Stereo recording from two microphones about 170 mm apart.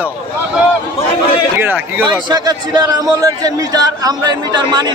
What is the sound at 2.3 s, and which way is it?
A man's voice, 25° right (ahead or behind).